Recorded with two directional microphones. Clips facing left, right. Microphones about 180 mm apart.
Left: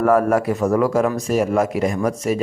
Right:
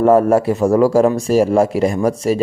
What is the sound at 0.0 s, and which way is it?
Speech, 25° right (ahead or behind).